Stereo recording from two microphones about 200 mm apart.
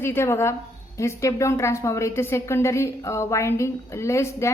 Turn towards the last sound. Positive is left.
turn(degrees=15)  # may be behind; listen again after turning